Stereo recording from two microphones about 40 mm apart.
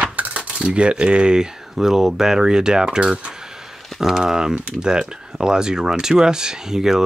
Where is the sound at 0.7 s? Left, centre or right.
Right.